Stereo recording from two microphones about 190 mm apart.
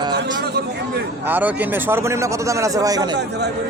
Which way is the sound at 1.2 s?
10° right (ahead or behind).